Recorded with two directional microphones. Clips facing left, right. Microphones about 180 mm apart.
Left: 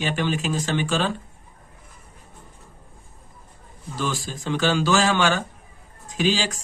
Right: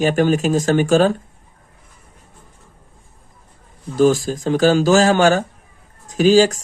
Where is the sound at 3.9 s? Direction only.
45° right (ahead or behind).